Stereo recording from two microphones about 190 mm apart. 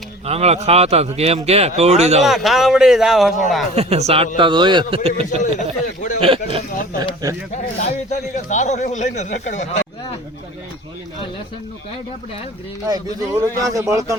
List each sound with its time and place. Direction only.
0.3 s speech: 35° right (ahead or behind)
2.2 s a man's voice: centre (ahead or behind)
3.8 s a man's voice: 35° right (ahead or behind)
5.4 s a man's voice: 40° left (ahead or behind)
6.1 s a man's voice: 30° right (ahead or behind)
7.2 s a man's voice: 15° right (ahead or behind)
8.1 s a man's voice: 40° left (ahead or behind)
12.9 s a man's voice: 15° right (ahead or behind)